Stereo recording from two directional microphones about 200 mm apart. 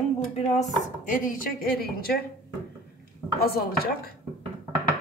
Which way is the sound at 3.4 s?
50° left (ahead or behind).